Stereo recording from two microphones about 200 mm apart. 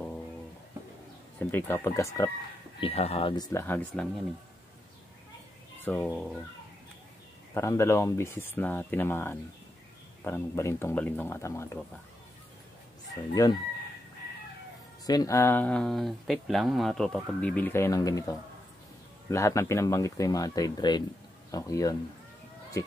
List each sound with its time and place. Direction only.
1.5 s speech: 10° left (ahead or behind)
2.8 s speech: 30° left (ahead or behind); by 4.1 s 5° left (ahead or behind)
5.8 s a sound: 10° left (ahead or behind)
6.0 s speech: centre (ahead or behind)
7.5 s speech: 15° left (ahead or behind)
13.3 s speech: 20° left (ahead or behind)
15.0 s speech: 15° left (ahead or behind)